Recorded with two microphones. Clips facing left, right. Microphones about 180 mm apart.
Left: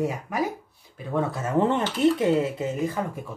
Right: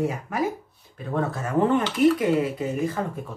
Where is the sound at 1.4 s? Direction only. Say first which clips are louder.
Right 2 dB; 20° left (ahead or behind).